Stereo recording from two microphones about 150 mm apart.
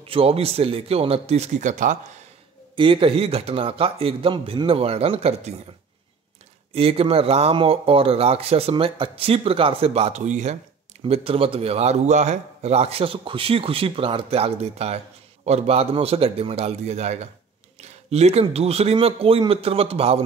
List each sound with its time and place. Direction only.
0.0 s speech: 40° right (ahead or behind); by 2.0 s 55° right (ahead or behind)
2.7 s speech: 35° right (ahead or behind)
6.7 s speech: 40° right (ahead or behind)
11.1 s a man's voice: 40° right (ahead or behind)